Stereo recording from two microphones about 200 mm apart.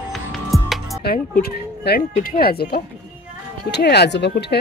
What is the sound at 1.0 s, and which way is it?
Speech, 45° left (ahead or behind).